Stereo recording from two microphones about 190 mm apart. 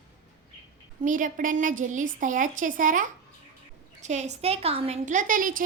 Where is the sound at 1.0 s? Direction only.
45° right (ahead or behind).